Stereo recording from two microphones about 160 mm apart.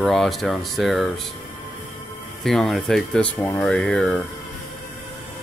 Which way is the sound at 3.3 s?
15° left (ahead or behind).